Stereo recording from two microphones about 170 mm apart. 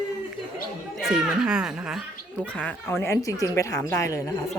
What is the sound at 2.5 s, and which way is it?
Speech, 10° left (ahead or behind).